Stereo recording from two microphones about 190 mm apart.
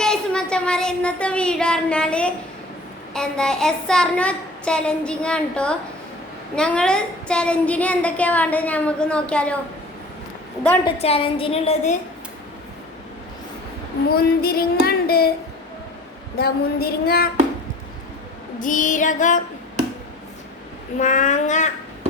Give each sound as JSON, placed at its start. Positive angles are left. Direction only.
{"t": 0.0, "sound": "child singing", "side_deg": 5}
{"t": 3.1, "sound": "a child's voice", "side_deg": 5}
{"t": 10.8, "sound": "a woman's voice", "side_deg": 30}
{"t": 14.1, "sound": "female singing", "side_deg": 55}
{"t": 16.4, "sound": "a sound", "side_deg": 55}
{"t": 18.6, "sound": "female singing", "side_deg": 45}
{"t": 21.0, "sound": "a woman's voice", "side_deg": 40}